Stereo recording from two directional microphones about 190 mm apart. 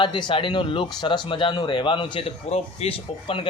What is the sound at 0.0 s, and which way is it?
Speech, 25° left (ahead or behind).